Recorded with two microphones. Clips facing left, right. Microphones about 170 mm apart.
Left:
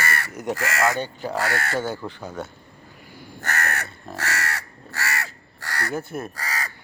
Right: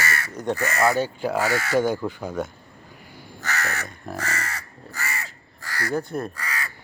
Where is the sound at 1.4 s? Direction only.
60° left (ahead or behind).